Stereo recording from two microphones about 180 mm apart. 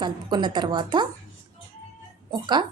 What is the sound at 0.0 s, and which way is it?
A woman's voice, 25° right (ahead or behind).